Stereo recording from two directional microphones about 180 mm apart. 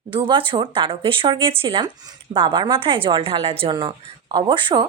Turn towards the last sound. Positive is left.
turn(degrees=-25)  # may be behind; listen again after turning